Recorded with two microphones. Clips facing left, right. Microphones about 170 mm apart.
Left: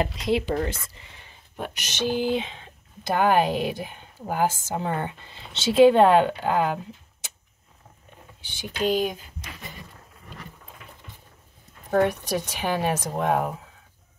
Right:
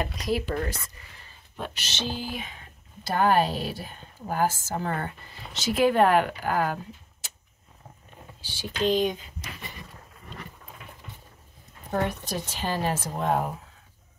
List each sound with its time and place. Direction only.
0.0 s speech: 25° left (ahead or behind)
1.6 s speech: 15° left (ahead or behind)
8.4 s speech: 20° left (ahead or behind)
11.9 s speech: 15° left (ahead or behind)